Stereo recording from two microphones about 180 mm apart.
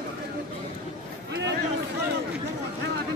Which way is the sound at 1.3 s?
70° right (ahead or behind).